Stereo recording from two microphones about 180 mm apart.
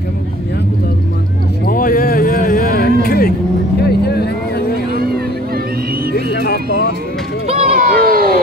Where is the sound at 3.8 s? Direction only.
65° left (ahead or behind).